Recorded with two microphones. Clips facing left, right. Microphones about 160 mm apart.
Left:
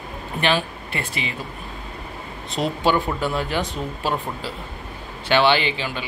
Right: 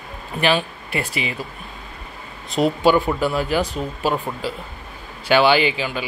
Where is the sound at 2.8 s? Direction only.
5° right (ahead or behind).